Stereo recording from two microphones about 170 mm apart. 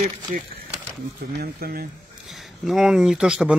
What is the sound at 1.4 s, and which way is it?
Speech, 65° right (ahead or behind).